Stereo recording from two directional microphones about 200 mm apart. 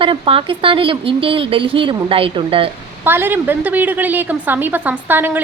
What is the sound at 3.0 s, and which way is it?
A woman's voice, 10° right (ahead or behind).